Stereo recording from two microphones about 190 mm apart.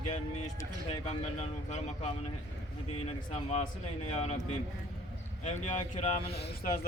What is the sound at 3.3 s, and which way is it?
Speech, 35° left (ahead or behind).